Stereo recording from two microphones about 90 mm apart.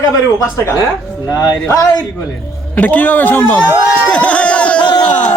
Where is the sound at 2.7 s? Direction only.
20° left (ahead or behind).